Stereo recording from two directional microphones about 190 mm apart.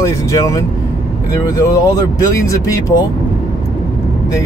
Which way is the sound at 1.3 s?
20° left (ahead or behind).